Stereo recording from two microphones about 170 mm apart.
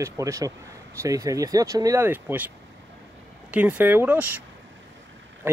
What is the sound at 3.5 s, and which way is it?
Speech, 10° right (ahead or behind).